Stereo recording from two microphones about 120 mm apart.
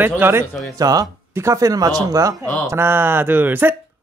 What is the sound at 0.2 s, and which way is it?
Speech, 20° right (ahead or behind).